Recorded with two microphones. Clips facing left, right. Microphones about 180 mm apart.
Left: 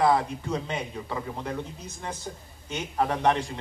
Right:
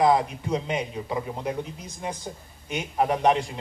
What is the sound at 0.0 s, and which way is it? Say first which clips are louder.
A man's voice: right 2 dB; 15° right (ahead or behind).